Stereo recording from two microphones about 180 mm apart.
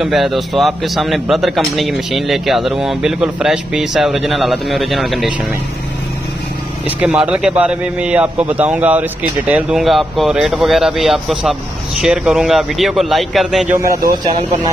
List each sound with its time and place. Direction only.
0.0 s a man's voice: centre (ahead or behind)
7.0 s a man's voice: 5° right (ahead or behind)
13.7 s a man's voice: 20° right (ahead or behind)